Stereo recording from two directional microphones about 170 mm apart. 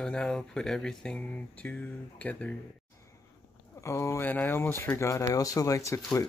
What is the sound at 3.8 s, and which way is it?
Speech, 15° left (ahead or behind).